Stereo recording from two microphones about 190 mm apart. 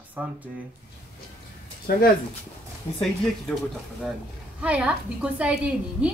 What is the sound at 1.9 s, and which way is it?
Speech, 55° left (ahead or behind).